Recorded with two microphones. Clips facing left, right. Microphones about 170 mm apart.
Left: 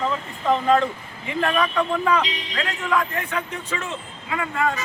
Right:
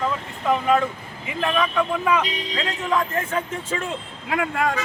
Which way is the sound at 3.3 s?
40° right (ahead or behind).